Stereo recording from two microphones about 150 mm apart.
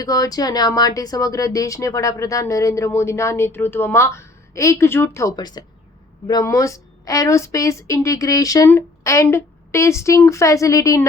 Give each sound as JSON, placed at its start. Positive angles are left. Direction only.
{"t": 0.0, "sound": "speech", "side_deg": 25}